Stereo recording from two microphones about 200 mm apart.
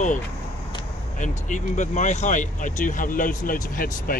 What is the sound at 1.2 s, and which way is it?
Speech, 40° left (ahead or behind).